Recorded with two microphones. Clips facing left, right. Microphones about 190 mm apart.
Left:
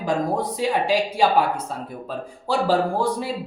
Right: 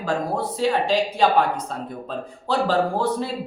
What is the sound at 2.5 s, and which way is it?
Speech, 10° left (ahead or behind).